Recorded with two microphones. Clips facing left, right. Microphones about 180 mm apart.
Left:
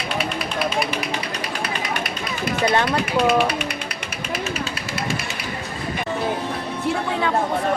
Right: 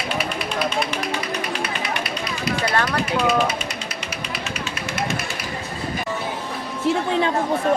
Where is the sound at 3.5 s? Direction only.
65° left (ahead or behind).